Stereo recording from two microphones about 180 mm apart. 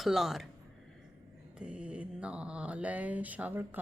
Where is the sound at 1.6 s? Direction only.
5° right (ahead or behind).